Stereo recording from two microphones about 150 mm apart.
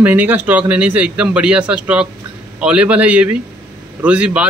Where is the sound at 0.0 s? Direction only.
10° right (ahead or behind).